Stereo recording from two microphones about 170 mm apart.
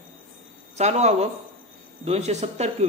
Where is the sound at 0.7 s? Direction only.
40° right (ahead or behind).